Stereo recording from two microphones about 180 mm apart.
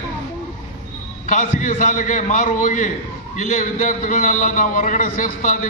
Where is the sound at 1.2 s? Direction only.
45° left (ahead or behind).